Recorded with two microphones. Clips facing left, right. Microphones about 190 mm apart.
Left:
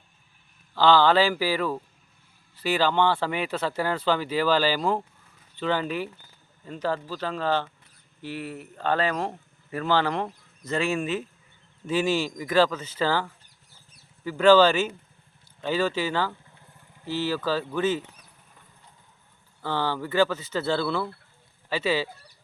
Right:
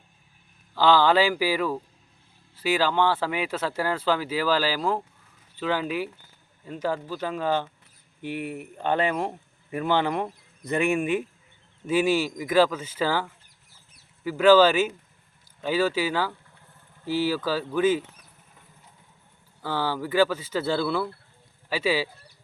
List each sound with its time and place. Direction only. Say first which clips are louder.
0.8 s speech: even; 10° right (ahead or behind)
19.6 s speech: even; 10° right (ahead or behind)